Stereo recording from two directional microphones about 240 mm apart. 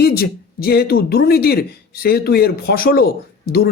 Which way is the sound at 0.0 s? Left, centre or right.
Left.